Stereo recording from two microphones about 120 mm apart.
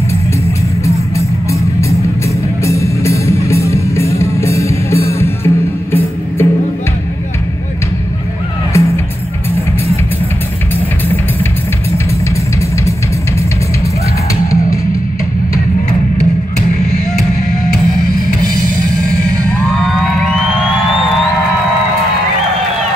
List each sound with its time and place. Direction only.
1.5 s music: 25° left (ahead or behind)
8.7 s music: 25° left (ahead or behind)